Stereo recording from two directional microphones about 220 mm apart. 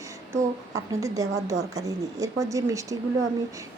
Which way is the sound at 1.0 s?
15° right (ahead or behind).